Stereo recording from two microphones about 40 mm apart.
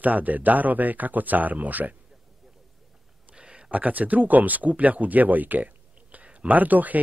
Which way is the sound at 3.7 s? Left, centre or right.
Right.